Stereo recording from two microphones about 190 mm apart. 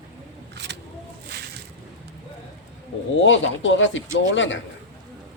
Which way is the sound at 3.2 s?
80° left.